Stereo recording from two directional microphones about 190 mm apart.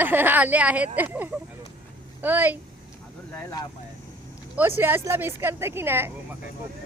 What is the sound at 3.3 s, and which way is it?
Speech, 15° left (ahead or behind).